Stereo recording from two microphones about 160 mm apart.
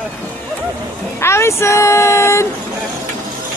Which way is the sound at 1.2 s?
15° left (ahead or behind).